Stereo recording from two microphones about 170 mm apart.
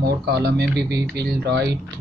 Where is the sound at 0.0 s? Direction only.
70° right (ahead or behind).